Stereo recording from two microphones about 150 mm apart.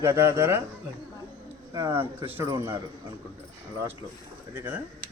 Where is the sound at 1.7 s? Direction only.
20° right (ahead or behind).